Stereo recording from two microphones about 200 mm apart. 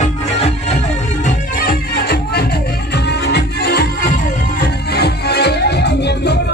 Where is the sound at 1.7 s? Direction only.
50° left (ahead or behind).